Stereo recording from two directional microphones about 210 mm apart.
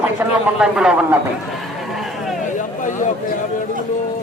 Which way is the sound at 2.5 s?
35° left (ahead or behind).